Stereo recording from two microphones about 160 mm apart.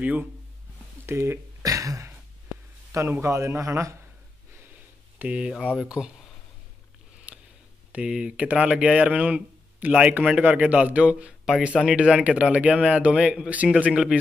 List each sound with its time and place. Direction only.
0.0 s speech: 10° right (ahead or behind)
1.0 s a sound: 15° right (ahead or behind)
2.9 s speech: 15° right (ahead or behind)
5.2 s speech: 10° right (ahead or behind)
7.3 s a sound: 10° right (ahead or behind)
7.9 s speech: 5° right (ahead or behind)